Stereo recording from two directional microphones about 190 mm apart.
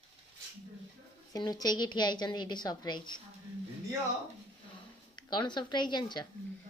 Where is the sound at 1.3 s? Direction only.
20° left (ahead or behind).